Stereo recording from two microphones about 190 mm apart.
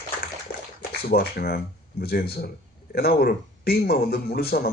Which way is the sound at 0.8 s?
55° left (ahead or behind).